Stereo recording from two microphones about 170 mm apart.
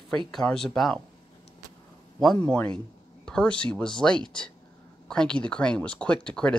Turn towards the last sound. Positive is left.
turn(degrees=5)  # may be behind; listen again after turning